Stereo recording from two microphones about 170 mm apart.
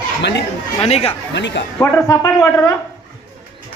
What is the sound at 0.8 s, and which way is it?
Speech, 35° left (ahead or behind).